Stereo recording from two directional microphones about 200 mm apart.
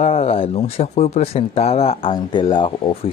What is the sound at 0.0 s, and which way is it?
Speech, 35° left (ahead or behind).